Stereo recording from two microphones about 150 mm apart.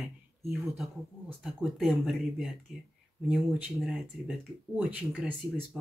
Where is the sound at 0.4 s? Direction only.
Centre (ahead or behind).